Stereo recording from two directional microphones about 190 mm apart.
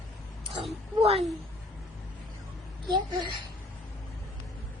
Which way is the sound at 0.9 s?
30° right (ahead or behind).